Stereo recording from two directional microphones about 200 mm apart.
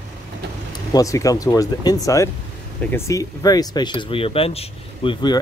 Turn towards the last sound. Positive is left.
turn(degrees=25)  # may be behind; listen again after turning